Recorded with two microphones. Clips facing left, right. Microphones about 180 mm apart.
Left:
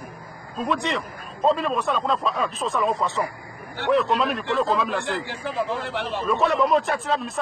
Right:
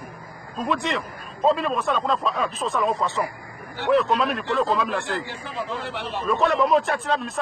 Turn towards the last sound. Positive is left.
turn(degrees=0)  # may be behind; listen again after turning